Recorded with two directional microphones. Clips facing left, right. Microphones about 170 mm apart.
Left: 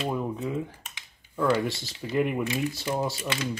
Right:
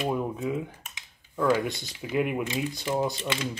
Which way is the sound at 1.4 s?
15° right (ahead or behind).